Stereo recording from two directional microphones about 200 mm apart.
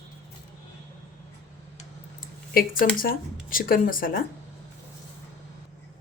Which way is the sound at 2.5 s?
45° left (ahead or behind).